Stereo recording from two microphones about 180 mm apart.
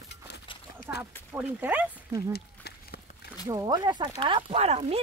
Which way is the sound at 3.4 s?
20° right (ahead or behind).